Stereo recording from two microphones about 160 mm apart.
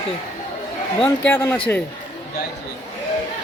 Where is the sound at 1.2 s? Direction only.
15° left (ahead or behind).